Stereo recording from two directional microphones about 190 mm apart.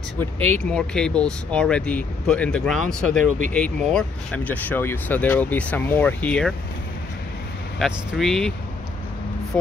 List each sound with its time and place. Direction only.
0.2 s speech: 10° left (ahead or behind)
7.8 s speech: centre (ahead or behind)